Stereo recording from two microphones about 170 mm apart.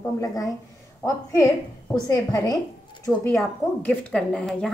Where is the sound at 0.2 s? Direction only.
20° left (ahead or behind).